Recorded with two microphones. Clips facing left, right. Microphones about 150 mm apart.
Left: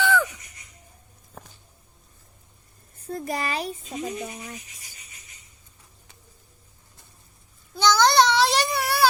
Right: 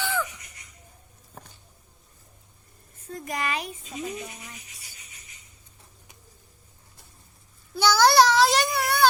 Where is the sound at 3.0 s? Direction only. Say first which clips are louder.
Left 2 dB; 35° left (ahead or behind).